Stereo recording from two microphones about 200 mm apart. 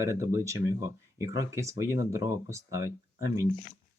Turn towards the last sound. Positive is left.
turn(degrees=-15)  # may be behind; listen again after turning